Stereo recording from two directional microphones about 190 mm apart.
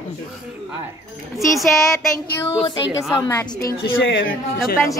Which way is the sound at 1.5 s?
Centre (ahead or behind).